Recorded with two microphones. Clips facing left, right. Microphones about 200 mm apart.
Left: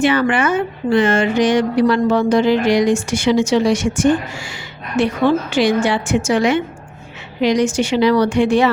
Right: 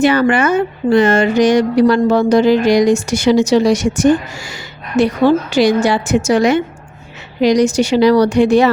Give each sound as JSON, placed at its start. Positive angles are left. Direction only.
{"t": 0.0, "sound": "speech", "side_deg": -40}